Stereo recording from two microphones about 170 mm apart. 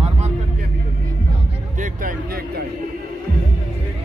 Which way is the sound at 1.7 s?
50° right (ahead or behind).